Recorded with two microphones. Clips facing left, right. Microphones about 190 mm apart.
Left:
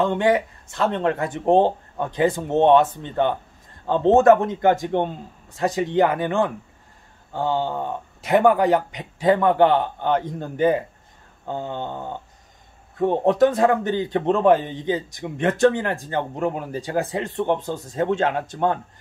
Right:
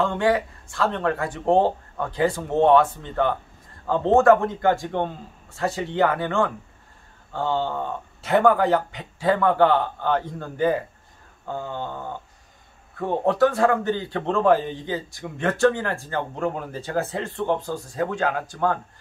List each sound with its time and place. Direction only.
0.0 s a man's voice: 20° left (ahead or behind)